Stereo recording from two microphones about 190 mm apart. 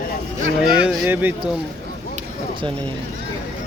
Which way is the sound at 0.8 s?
5° right (ahead or behind).